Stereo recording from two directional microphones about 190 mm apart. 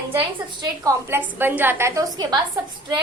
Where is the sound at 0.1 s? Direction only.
15° right (ahead or behind).